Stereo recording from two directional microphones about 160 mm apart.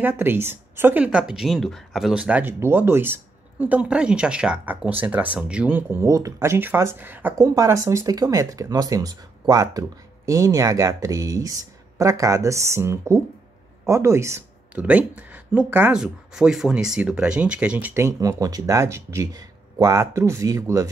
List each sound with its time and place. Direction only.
0.0 s speech: 15° right (ahead or behind)